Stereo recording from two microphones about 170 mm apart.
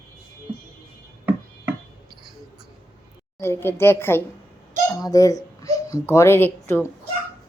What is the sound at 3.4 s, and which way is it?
A woman's voice, 15° left (ahead or behind).